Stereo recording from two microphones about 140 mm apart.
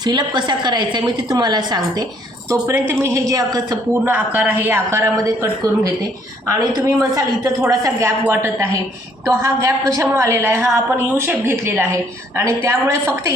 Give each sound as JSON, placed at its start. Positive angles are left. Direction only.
{"t": 0.0, "sound": "a woman's voice", "side_deg": -30}
{"t": 2.5, "sound": "a woman's voice", "side_deg": -20}
{"t": 4.0, "sound": "a man's voice", "side_deg": -15}
{"t": 6.5, "sound": "a woman's voice", "side_deg": -25}